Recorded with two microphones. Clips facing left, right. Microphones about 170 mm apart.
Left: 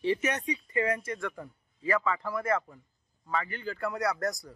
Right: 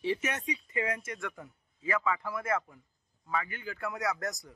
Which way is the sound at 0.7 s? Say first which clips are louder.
Left 5 dB; 20° right (ahead or behind).